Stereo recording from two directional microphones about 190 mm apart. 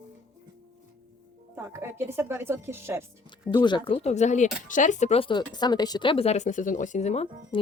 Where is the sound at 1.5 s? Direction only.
15° right (ahead or behind).